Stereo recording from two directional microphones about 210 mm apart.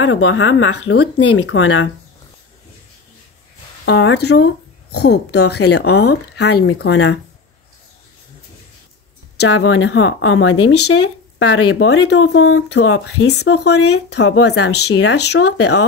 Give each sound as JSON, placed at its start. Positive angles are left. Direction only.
{"t": 0.0, "sound": "speech", "side_deg": 70}
{"t": 1.4, "sound": "speech", "side_deg": 70}
{"t": 3.8, "sound": "speech", "side_deg": 55}
{"t": 9.4, "sound": "speech", "side_deg": 65}
{"t": 12.8, "sound": "speech", "side_deg": 80}